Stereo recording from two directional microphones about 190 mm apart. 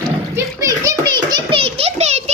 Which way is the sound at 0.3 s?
15° right (ahead or behind).